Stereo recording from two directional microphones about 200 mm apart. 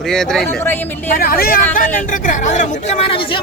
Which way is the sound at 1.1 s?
45° left (ahead or behind).